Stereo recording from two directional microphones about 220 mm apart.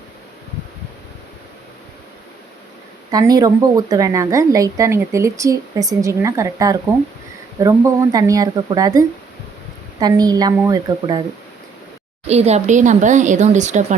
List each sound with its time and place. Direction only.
3.1 s a woman's voice: 15° right (ahead or behind)
12.3 s speech: 30° right (ahead or behind)